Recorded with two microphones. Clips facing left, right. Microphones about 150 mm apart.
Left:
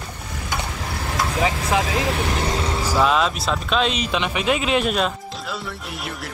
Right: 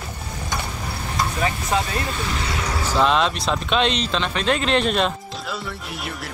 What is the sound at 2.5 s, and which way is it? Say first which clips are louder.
Vehicle: left 3 dB; 25° left (ahead or behind).